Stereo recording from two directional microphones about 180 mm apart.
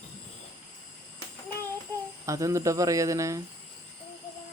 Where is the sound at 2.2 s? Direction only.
15° right (ahead or behind).